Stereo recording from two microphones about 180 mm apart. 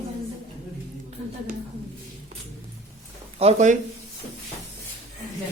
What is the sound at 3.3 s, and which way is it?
Speech, 40° right (ahead or behind).